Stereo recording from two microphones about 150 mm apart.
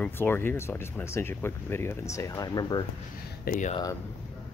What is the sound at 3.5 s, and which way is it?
Speech, 75° left (ahead or behind).